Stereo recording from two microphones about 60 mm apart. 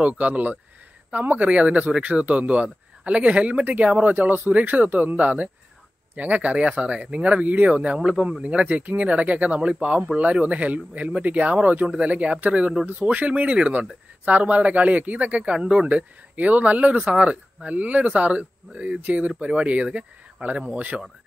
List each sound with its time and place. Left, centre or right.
0.0 s speech: right